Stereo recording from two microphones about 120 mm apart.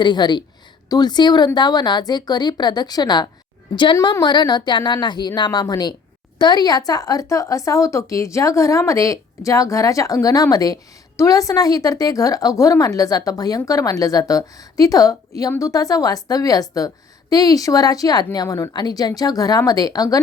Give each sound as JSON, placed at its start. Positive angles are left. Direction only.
{"t": 0.0, "sound": "a woman's voice", "side_deg": 40}